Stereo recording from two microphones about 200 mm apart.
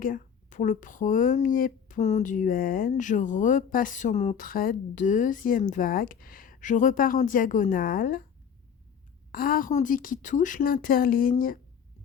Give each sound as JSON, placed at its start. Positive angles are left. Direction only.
{"t": 0.0, "sound": "speech", "side_deg": 40}
{"t": 9.3, "sound": "a woman's voice", "side_deg": 45}